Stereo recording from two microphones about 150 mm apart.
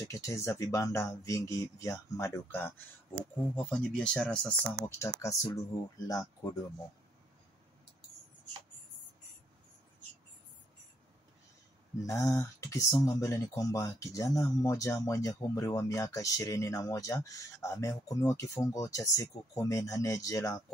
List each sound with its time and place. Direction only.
0.1 s speech: 20° left (ahead or behind)
3.5 s speech: 5° left (ahead or behind)
4.9 s speech: 20° left (ahead or behind)
12.0 s speech: 20° left (ahead or behind)